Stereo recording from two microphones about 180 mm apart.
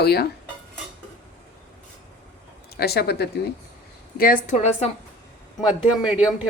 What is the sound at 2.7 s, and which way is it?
Speech, 60° left (ahead or behind).